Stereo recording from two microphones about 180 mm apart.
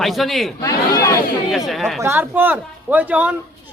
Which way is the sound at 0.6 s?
20° left (ahead or behind).